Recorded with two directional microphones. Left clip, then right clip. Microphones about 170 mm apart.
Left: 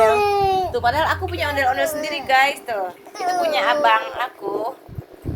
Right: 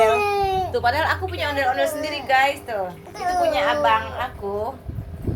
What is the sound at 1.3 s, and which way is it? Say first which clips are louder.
A woman's voice: left 3 dB; 55° left (ahead or behind).